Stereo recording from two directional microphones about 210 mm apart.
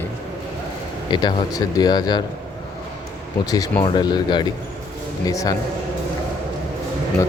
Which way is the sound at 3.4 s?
15° left (ahead or behind).